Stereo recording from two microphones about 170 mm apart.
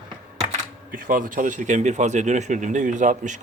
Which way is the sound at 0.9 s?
55° right (ahead or behind).